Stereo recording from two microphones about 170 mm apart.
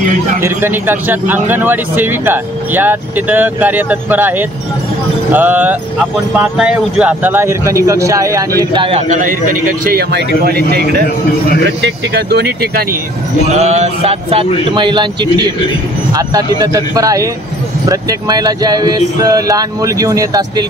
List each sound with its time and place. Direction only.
0.4 s speech: 10° right (ahead or behind)
9.1 s a man's voice: 50° right (ahead or behind)
10.7 s speech: 70° right (ahead or behind)
11.8 s speech: 80° right
13.5 s speech: 40° right (ahead or behind); by 20.6 s 20° right (ahead or behind)